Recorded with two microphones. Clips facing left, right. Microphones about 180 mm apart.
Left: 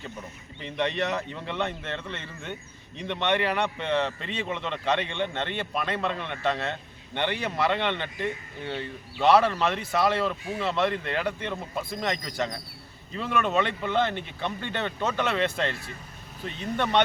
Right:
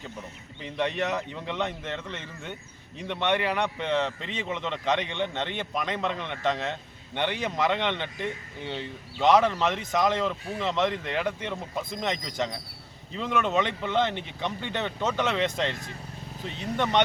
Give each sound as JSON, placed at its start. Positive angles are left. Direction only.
{"t": 0.6, "sound": "a man's voice", "side_deg": -10}